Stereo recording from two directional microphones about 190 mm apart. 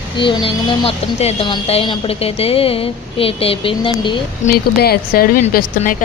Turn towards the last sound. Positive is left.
turn(degrees=45)  # may be behind; listen again after turning